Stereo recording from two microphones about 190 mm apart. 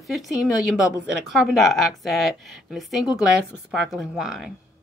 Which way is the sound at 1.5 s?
Centre (ahead or behind).